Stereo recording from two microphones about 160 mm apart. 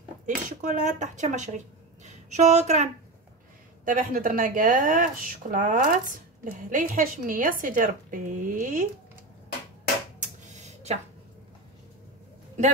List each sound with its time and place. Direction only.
0.3 s speech: 55° right (ahead or behind)
3.8 s a woman's voice: 60° right (ahead or behind)
10.2 s a sound: 50° right (ahead or behind)